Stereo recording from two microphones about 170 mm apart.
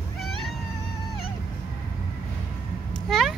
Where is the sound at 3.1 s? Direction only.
Centre (ahead or behind).